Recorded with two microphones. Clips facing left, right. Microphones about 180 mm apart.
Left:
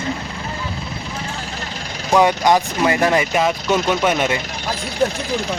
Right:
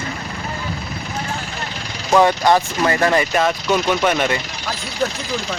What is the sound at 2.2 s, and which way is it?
Speech, 15° left (ahead or behind).